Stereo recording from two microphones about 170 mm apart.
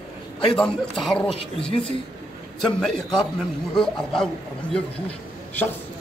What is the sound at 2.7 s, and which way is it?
A man's voice, 5° left (ahead or behind).